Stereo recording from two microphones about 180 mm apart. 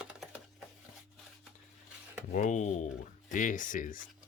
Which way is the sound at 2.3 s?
45° left (ahead or behind).